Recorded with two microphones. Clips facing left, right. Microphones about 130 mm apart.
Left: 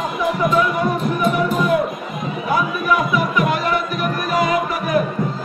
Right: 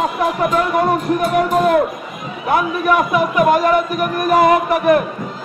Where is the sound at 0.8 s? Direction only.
70° right (ahead or behind).